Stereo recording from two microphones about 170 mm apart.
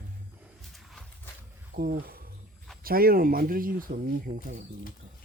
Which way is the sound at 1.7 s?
60° right (ahead or behind).